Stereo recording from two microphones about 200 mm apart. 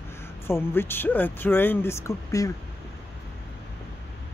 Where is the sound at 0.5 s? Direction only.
10° left (ahead or behind).